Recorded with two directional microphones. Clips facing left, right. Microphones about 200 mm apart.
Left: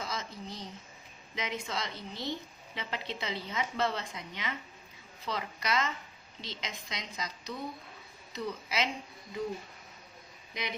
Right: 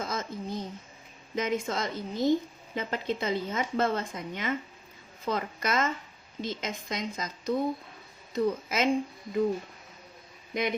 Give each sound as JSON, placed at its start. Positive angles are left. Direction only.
{"t": 0.0, "sound": "a sound", "side_deg": -50}
{"t": 1.4, "sound": "a woman's voice", "side_deg": -50}
{"t": 10.5, "sound": "speech", "side_deg": -50}